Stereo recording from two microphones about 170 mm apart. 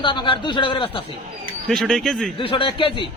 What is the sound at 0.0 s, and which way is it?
A man's voice, 30° left (ahead or behind).